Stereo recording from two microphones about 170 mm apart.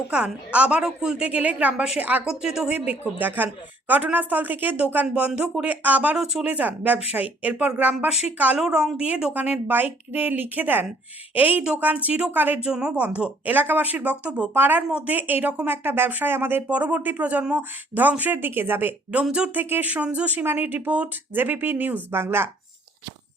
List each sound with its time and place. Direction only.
0.1 s speech: 5° right (ahead or behind)